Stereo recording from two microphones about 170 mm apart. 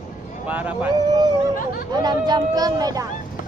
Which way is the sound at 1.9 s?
25° right (ahead or behind).